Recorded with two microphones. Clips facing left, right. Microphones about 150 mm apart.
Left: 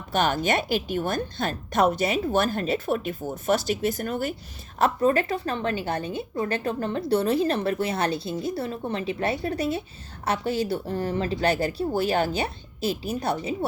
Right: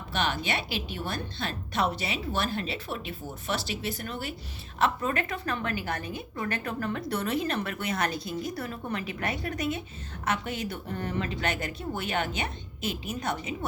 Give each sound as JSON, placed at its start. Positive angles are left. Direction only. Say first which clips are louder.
{"t": 0.1, "sound": "a woman's voice", "louder": "left 7 dB", "side_deg": 45}
{"t": 4.8, "sound": "a woman's voice", "louder": "left 6 dB", "side_deg": 35}